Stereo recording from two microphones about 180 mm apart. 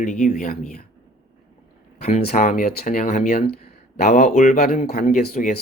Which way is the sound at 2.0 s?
35° left (ahead or behind).